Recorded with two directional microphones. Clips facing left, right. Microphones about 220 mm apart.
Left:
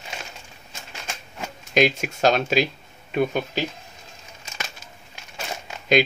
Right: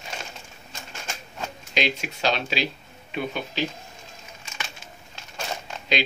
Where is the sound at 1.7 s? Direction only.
45° left (ahead or behind).